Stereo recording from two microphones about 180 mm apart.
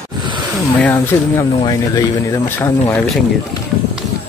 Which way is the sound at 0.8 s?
10° left (ahead or behind).